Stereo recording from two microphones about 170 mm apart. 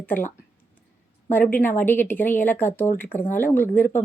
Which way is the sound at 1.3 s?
10° left (ahead or behind).